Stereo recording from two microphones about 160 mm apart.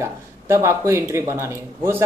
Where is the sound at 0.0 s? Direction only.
20° right (ahead or behind).